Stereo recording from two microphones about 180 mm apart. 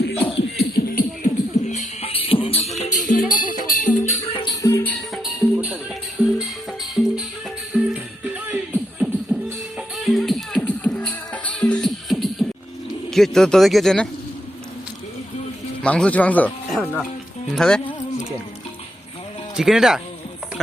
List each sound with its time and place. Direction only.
0.3 s beatboxing: 60° left (ahead or behind)
1.7 s music: 35° left (ahead or behind)
2.7 s music: 40° left (ahead or behind)
4.9 s music: centre (ahead or behind)
13.1 s speech: centre (ahead or behind)
15.8 s speech: 5° left (ahead or behind)
19.5 s speech: centre (ahead or behind)